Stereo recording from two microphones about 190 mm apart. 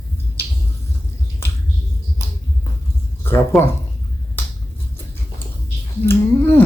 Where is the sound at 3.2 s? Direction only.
10° left (ahead or behind).